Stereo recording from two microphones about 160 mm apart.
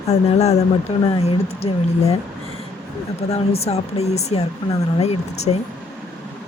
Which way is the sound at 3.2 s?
40° left (ahead or behind).